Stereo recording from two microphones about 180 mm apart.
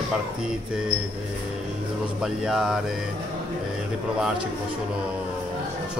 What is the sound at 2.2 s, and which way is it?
Speech, centre (ahead or behind).